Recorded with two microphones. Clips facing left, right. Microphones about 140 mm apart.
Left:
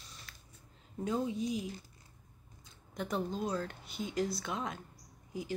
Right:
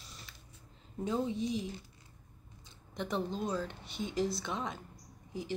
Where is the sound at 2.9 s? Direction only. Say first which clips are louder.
Even; 5° left (ahead or behind).